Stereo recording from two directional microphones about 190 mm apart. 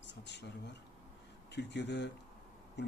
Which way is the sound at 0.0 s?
65° left (ahead or behind).